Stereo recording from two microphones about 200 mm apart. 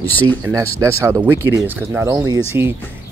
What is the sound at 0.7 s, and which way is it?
Speech, 15° right (ahead or behind).